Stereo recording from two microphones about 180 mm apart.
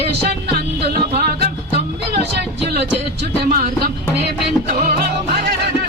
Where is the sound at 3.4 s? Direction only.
55° right (ahead or behind).